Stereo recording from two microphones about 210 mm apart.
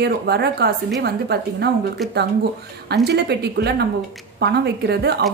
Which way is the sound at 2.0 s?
Centre (ahead or behind).